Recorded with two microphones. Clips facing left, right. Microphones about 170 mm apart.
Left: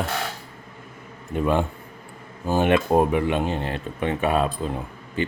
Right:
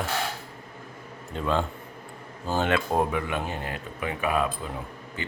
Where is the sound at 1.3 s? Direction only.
15° left (ahead or behind).